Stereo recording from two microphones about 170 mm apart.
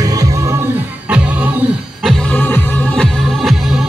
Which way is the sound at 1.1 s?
5° right (ahead or behind).